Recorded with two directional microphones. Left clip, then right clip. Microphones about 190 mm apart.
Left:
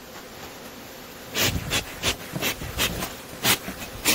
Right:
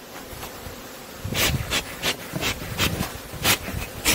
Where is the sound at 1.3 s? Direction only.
15° left (ahead or behind).